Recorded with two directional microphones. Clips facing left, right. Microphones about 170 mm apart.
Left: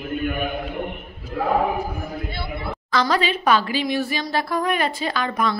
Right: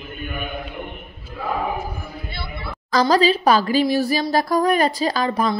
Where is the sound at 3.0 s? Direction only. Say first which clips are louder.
Right 6 dB; 35° right (ahead or behind).